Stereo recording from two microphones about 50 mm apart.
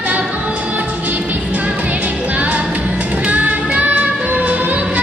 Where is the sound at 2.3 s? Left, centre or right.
Right.